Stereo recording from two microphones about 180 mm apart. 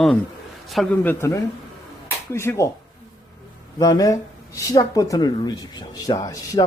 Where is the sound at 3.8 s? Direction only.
20° left (ahead or behind).